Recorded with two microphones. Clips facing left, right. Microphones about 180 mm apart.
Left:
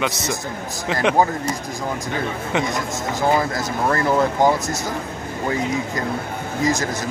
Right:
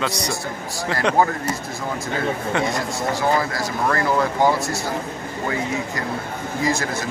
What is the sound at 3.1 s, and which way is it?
Speech, 20° left (ahead or behind).